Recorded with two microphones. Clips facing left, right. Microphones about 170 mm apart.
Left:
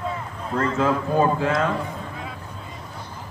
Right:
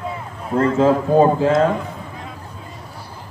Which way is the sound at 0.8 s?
30° right (ahead or behind).